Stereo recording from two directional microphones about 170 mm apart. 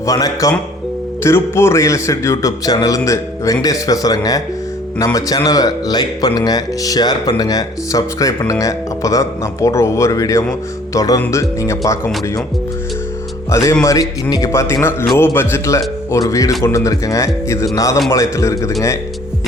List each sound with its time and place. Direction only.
0.0 s speech: 20° left (ahead or behind)
13.5 s speech: 15° left (ahead or behind)